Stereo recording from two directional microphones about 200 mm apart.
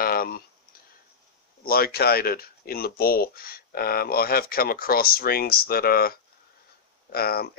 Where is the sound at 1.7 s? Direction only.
50° left (ahead or behind).